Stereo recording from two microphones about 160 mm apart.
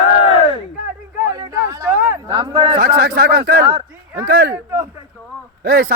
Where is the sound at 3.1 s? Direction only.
65° right (ahead or behind).